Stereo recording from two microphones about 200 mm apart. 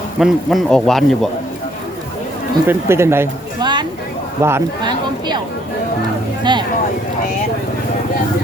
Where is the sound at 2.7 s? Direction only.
10° right (ahead or behind).